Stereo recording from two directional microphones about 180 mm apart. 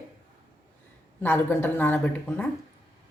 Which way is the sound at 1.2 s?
10° left (ahead or behind).